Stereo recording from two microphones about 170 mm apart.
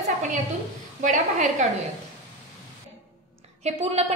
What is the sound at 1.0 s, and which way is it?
Speech, 50° right (ahead or behind).